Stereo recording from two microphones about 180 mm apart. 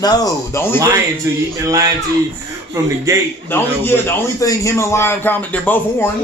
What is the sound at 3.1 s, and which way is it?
Music, 15° right (ahead or behind).